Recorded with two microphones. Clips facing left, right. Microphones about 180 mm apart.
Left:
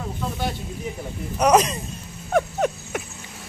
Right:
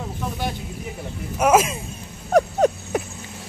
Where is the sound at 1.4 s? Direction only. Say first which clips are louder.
Even; 5° right (ahead or behind).